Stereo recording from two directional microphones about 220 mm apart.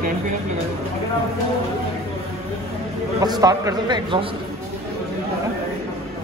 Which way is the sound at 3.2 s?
15° right (ahead or behind).